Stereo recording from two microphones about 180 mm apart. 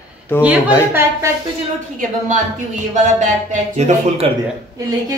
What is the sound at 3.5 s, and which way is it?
Speech, 40° right (ahead or behind).